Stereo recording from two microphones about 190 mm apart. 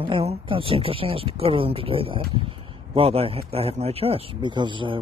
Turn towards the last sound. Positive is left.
turn(degrees=-25)  # may be behind; listen again after turning